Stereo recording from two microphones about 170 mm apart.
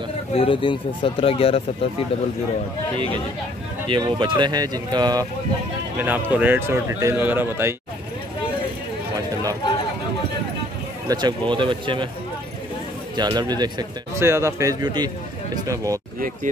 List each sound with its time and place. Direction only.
0.3 s speech: 30° left (ahead or behind)
3.9 s speech: 30° right (ahead or behind)
5.9 s speech: 10° right (ahead or behind)
11.1 s speech: 25° right (ahead or behind)
13.1 s speech: 25° right (ahead or behind)